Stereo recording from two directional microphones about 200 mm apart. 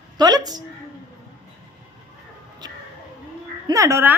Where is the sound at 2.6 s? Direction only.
20° right (ahead or behind).